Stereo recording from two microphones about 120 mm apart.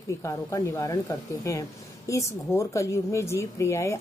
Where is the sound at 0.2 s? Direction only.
25° left (ahead or behind).